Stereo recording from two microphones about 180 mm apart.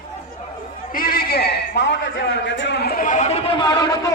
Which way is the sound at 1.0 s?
55° left (ahead or behind).